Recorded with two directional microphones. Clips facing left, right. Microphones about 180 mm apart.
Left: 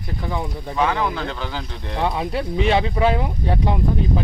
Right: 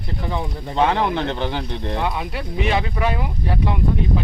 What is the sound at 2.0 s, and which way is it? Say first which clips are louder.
Speech: left 3 dB; 30° left (ahead or behind).